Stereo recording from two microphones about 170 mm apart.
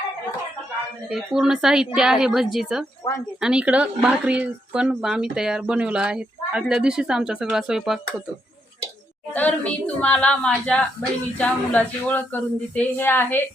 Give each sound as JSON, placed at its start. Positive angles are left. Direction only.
{"t": 1.1, "sound": "speech", "side_deg": 0}
{"t": 3.0, "sound": "speech", "side_deg": 25}
{"t": 3.4, "sound": "speech", "side_deg": -5}
{"t": 9.3, "sound": "speech", "side_deg": 10}